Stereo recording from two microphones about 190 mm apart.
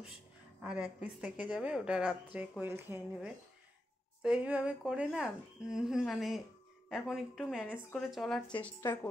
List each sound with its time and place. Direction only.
0.6 s speech: 5° right (ahead or behind)
8.8 s a woman's voice: 15° left (ahead or behind)